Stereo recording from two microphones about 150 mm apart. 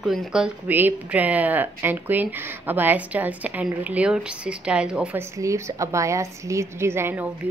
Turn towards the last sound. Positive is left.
turn(degrees=-15)  # may be behind; listen again after turning